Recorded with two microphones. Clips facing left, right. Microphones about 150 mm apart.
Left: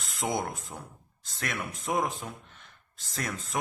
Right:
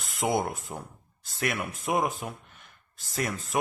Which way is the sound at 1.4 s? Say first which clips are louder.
Right 4 dB; 10° right (ahead or behind).